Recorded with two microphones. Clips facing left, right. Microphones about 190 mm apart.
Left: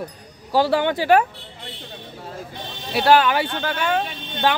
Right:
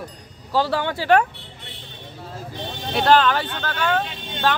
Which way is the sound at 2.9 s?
10° left (ahead or behind).